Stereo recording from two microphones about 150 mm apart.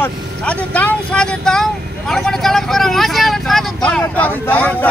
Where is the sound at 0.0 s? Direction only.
10° left (ahead or behind).